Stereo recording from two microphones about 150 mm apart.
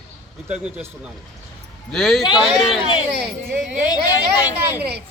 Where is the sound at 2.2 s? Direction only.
30° left (ahead or behind).